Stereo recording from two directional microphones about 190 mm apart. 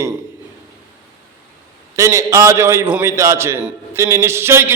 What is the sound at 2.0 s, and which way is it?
A man's voice, 15° right (ahead or behind).